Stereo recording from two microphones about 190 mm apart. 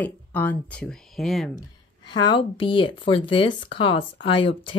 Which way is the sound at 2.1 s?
25° left (ahead or behind).